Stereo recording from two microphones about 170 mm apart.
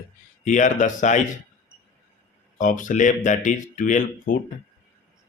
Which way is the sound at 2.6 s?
50° left (ahead or behind).